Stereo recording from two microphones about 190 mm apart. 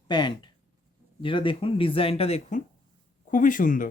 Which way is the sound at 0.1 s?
25° left (ahead or behind).